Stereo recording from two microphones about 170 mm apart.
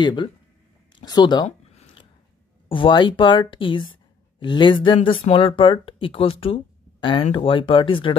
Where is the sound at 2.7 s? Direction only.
30° left (ahead or behind).